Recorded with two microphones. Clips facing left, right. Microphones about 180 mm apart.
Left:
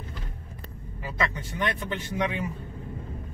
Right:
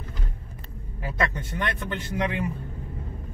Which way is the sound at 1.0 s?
55° right (ahead or behind).